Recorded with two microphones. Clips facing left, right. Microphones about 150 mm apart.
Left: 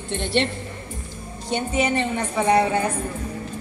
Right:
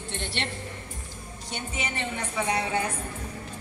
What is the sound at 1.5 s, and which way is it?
A woman's voice, 60° left (ahead or behind).